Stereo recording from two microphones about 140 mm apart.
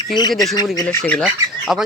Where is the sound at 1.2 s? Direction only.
5° right (ahead or behind).